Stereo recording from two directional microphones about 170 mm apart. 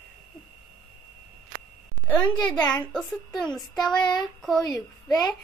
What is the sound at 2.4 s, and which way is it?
A woman's voice, 10° left (ahead or behind).